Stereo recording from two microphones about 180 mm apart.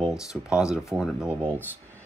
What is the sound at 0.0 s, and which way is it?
Speech, 5° right (ahead or behind).